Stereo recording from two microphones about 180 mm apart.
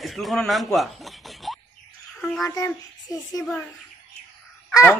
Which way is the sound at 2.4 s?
20° left (ahead or behind).